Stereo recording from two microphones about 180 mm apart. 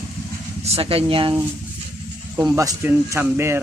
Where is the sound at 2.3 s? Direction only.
15° right (ahead or behind).